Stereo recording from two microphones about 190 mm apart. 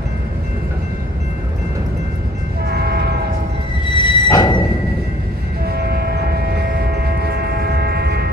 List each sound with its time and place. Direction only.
2.7 s train: 55° right (ahead or behind)
3.8 s music: 25° left (ahead or behind)
5.7 s train: 55° right (ahead or behind)